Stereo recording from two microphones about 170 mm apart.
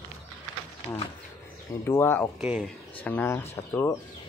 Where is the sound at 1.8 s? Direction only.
15° left (ahead or behind).